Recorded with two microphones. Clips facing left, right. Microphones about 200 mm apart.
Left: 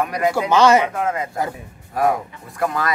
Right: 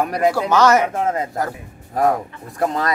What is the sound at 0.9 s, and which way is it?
Speech, 40° right (ahead or behind).